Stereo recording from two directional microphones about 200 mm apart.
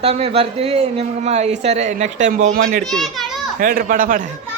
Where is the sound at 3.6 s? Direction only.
45° right (ahead or behind).